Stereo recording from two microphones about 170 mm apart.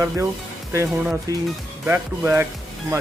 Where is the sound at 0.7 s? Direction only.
10° right (ahead or behind).